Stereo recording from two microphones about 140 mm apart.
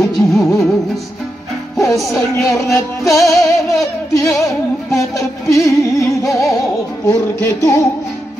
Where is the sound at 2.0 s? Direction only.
Centre (ahead or behind).